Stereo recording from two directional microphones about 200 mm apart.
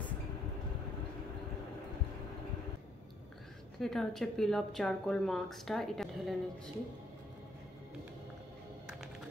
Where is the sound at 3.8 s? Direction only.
Centre (ahead or behind).